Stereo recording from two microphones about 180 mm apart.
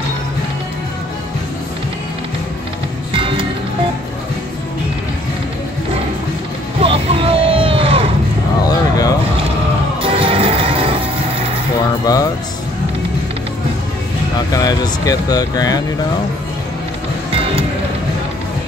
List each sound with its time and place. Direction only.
3.1 s music: 30° right (ahead or behind)
6.8 s a sound: 30° right (ahead or behind)
8.6 s a sound: 20° left (ahead or behind)
10.0 s music: 30° right (ahead or behind)
14.5 s speech: 20° left (ahead or behind)
17.3 s music: 30° right (ahead or behind)